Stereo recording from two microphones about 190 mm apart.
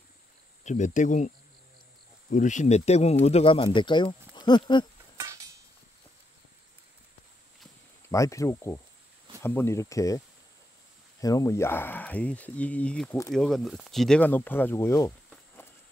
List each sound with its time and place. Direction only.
0.7 s speech: 40° left (ahead or behind); by 4.8 s 25° left (ahead or behind)
5.1 s a sound: 15° right (ahead or behind)
8.1 s speech: 15° left (ahead or behind)
15.2 s walk: 10° left (ahead or behind)